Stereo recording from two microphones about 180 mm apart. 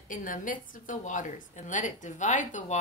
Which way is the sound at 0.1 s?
45° left (ahead or behind).